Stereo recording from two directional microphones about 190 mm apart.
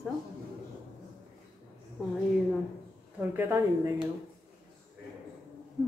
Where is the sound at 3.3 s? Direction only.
10° right (ahead or behind).